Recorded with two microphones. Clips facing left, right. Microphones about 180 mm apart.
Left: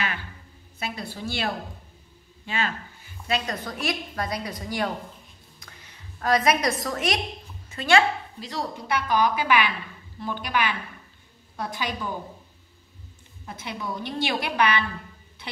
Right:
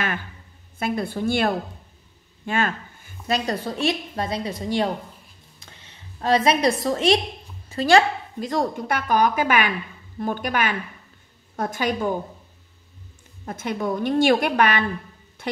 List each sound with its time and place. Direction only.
0.7 s a woman's voice: 50° right (ahead or behind); by 4.9 s 25° right (ahead or behind)
5.6 s a sound: 25° right (ahead or behind)
7.7 s a woman's voice: 40° right (ahead or behind)
13.5 s a woman's voice: 45° right (ahead or behind)